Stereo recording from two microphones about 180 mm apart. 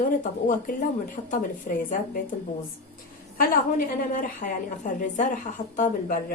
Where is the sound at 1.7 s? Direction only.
50° left (ahead or behind).